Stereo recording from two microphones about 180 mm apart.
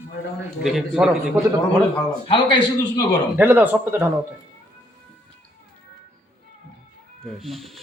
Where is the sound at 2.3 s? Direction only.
25° left (ahead or behind).